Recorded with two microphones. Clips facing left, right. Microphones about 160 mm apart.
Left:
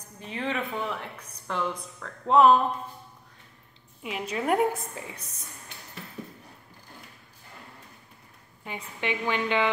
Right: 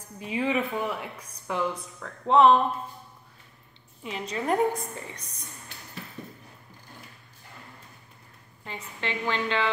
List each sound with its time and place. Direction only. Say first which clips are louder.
0.2 s speech: right 4 dB; 10° right (ahead or behind)
4.0 s a woman's voice: left 1 dB; 10° left (ahead or behind)
8.6 s a woman's voice: left 3 dB; 15° left (ahead or behind)